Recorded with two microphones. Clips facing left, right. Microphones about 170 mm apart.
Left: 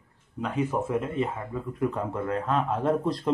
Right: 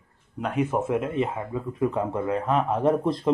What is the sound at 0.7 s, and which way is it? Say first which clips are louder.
Speech: right 3 dB; 15° right (ahead or behind).